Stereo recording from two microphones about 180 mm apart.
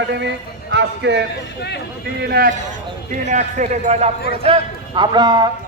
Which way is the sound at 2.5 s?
45° right (ahead or behind).